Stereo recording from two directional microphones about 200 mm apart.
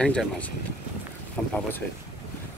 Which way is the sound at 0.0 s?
5° left (ahead or behind).